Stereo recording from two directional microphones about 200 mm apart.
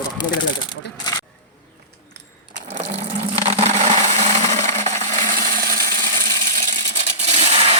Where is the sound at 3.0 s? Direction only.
30° right (ahead or behind); by 6.1 s 45° right (ahead or behind).